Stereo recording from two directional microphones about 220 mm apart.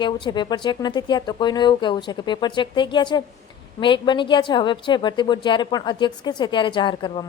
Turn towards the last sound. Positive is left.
turn(degrees=20)  # may be behind; listen again after turning